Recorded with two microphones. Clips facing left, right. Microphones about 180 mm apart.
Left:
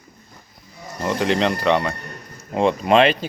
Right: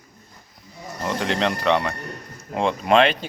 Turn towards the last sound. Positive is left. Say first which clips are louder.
# left 2 dB
turn(degrees=5)  # may be behind; listen again after turning